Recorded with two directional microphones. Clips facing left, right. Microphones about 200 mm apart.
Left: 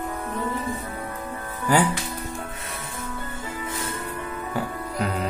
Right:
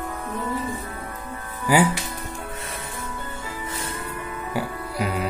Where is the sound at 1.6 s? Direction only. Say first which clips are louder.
Right 2 dB; 10° right (ahead or behind).